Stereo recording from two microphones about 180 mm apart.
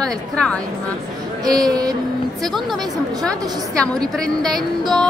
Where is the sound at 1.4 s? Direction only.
20° right (ahead or behind).